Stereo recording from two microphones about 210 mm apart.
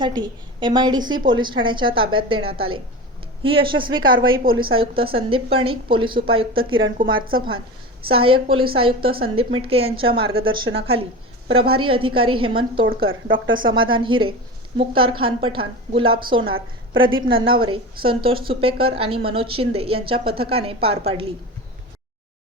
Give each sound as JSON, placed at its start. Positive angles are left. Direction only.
{"t": 0.0, "sound": "a woman's voice", "side_deg": -20}